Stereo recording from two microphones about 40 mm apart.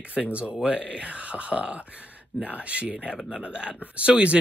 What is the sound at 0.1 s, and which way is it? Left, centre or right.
Speech, right.